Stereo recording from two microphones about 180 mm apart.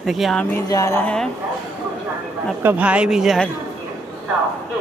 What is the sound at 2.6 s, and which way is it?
Speech, 10° right (ahead or behind).